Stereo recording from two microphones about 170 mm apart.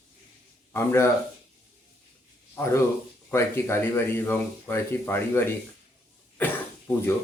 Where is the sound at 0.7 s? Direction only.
15° left (ahead or behind).